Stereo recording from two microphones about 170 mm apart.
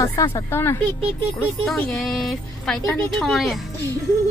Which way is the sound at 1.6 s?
Centre (ahead or behind).